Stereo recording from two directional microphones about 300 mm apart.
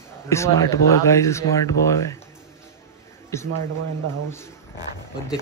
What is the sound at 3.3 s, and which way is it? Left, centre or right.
Speech, centre.